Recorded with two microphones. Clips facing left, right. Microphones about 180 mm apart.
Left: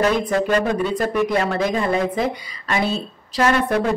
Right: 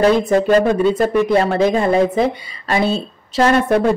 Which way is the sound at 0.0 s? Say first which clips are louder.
Right 5 dB; 30° right (ahead or behind).